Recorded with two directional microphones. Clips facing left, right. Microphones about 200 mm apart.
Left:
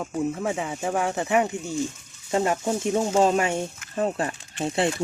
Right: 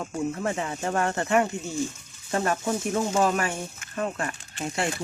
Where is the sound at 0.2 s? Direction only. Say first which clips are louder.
Left 2 dB; 10° left (ahead or behind).